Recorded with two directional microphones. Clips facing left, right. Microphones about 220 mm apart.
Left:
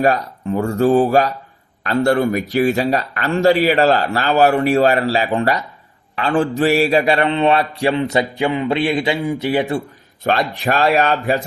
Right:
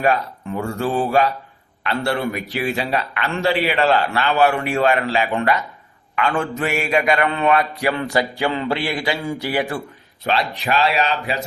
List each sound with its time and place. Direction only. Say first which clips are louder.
0.0 s a man's voice: left 3 dB; 40° left (ahead or behind); by 9.8 s 25° left (ahead or behind)
10.2 s speech: left 3 dB; 50° left (ahead or behind)